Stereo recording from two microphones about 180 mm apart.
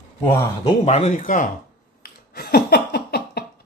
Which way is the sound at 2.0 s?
60° left (ahead or behind).